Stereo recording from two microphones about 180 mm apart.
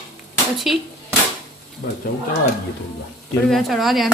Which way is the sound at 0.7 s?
Centre (ahead or behind).